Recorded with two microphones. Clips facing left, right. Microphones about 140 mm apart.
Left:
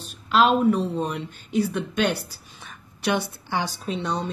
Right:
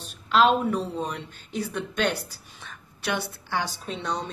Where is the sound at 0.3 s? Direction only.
5° left (ahead or behind).